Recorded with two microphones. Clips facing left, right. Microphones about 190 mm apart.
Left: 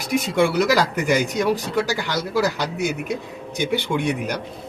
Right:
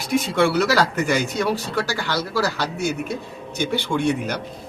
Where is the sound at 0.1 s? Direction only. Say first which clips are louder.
Even; 15° left (ahead or behind).